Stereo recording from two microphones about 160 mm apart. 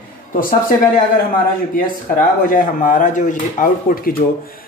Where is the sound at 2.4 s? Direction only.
60° left (ahead or behind).